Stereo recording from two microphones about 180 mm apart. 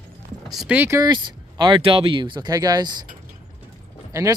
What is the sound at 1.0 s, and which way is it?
Speech, 25° right (ahead or behind).